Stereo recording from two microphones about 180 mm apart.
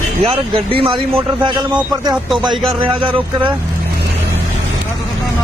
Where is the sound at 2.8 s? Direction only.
30° right (ahead or behind).